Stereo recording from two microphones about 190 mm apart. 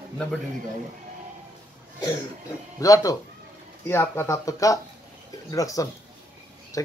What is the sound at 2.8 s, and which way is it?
Speech, 20° left (ahead or behind).